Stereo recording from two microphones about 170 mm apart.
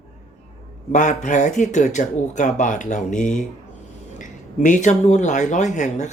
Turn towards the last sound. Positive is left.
turn(degrees=45)  # may be behind; listen again after turning